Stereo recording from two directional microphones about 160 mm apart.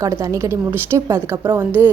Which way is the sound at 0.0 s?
20° right (ahead or behind).